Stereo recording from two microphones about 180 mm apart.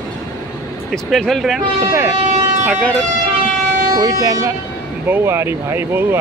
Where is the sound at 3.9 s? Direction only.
20° right (ahead or behind).